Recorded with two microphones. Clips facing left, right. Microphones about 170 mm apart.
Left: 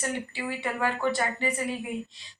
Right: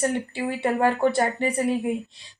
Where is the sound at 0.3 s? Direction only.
50° right (ahead or behind).